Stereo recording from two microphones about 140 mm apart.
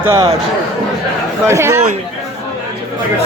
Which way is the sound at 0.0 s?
20° right (ahead or behind).